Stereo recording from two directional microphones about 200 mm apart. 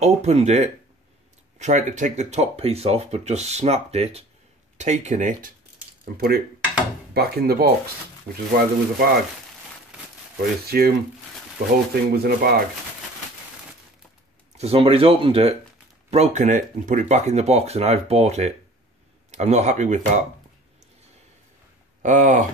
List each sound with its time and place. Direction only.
0.0 s speech: 35° right (ahead or behind)
6.1 s speech: 50° right (ahead or behind)
10.7 s speech: 50° right (ahead or behind)
11.9 s speech: 50° right (ahead or behind)
14.6 s speech: 30° right (ahead or behind)
22.0 s speech: 40° right (ahead or behind)